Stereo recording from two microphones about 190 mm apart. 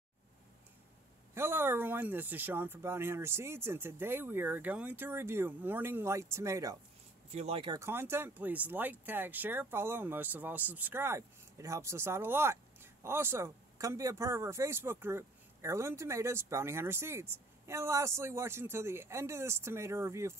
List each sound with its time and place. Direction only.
1.3 s speech: 10° right (ahead or behind)
7.2 s speech: 35° right (ahead or behind)
7.8 s speech: 10° right (ahead or behind)